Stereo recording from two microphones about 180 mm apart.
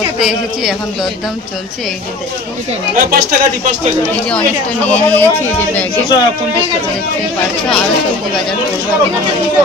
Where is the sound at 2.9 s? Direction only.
55° right (ahead or behind).